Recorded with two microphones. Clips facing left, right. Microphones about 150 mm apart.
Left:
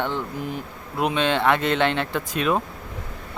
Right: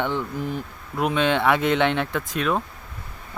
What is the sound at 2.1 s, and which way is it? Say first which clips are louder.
Speech: left 1 dB; centre (ahead or behind).